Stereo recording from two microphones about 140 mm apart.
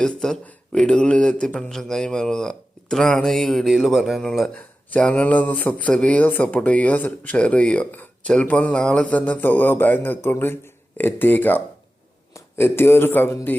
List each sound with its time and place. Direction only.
0.0 s a man's voice: 5° left (ahead or behind)